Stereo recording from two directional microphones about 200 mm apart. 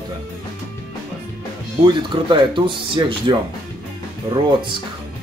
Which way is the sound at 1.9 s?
25° right (ahead or behind).